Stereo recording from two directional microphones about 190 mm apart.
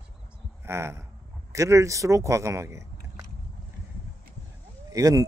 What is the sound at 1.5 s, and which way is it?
Speech, 15° right (ahead or behind).